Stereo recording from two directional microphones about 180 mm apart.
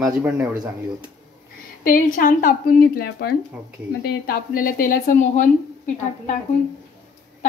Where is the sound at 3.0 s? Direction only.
60° left (ahead or behind); by 5.5 s 45° left (ahead or behind).